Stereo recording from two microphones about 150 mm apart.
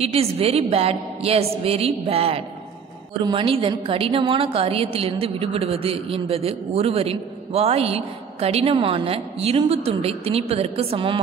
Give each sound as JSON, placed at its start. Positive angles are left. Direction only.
{"t": 0.1, "sound": "a woman's voice", "side_deg": -40}